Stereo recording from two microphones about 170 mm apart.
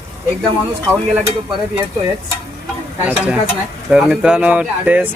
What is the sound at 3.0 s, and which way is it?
Speech, 10° right (ahead or behind).